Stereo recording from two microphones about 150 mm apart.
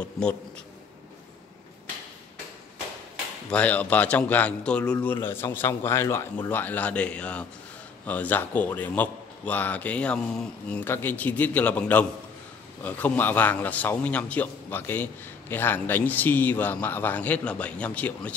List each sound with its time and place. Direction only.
3.4 s a man's voice: 10° left (ahead or behind)